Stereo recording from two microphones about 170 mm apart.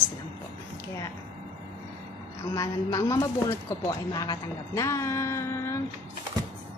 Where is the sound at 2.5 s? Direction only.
20° left (ahead or behind).